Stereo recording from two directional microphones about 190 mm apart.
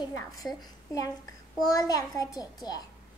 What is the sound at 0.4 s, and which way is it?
A woman's voice, 20° left (ahead or behind).